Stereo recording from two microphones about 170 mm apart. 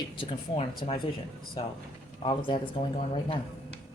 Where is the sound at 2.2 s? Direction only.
30° left (ahead or behind).